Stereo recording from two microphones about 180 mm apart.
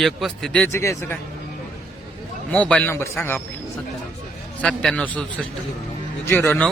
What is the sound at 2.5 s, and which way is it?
Speech, 5° left (ahead or behind).